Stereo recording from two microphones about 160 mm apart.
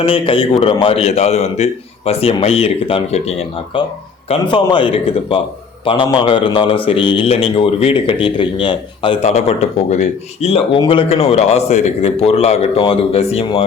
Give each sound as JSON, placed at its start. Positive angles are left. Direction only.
{"t": 0.0, "sound": "a man's voice", "side_deg": 35}